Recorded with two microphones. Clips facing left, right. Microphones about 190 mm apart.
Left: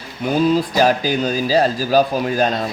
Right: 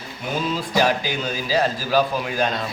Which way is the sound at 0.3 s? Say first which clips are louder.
Left 6 dB; 40° left (ahead or behind).